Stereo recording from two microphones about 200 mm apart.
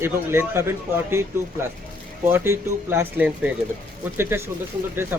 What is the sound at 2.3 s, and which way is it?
A man's voice, 10° right (ahead or behind).